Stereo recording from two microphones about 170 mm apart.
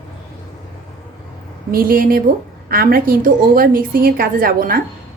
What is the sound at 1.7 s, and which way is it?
A woman's voice, 60° right (ahead or behind).